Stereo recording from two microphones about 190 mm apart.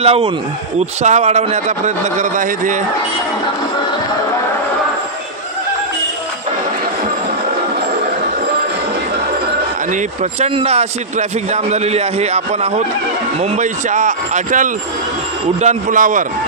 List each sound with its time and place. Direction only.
0.0 s speech: 30° right (ahead or behind)
9.9 s a man's voice: 35° right (ahead or behind)